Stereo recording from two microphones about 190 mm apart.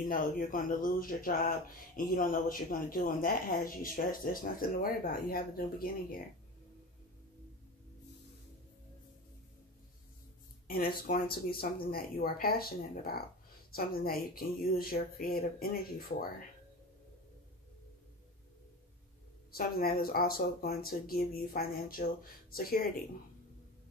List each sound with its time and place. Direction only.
0.1 s speech: 45° left (ahead or behind)
10.7 s speech: 50° left (ahead or behind)
19.5 s speech: 50° left (ahead or behind)